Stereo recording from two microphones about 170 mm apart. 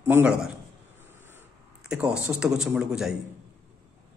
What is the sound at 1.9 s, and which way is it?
A man's voice, 5° right (ahead or behind).